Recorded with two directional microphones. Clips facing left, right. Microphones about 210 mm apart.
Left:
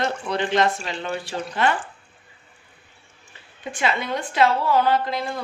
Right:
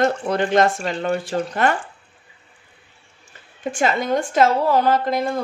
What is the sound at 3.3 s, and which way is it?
Speech, 45° right (ahead or behind).